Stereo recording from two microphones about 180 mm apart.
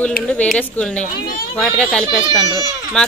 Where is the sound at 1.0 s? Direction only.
50° left (ahead or behind).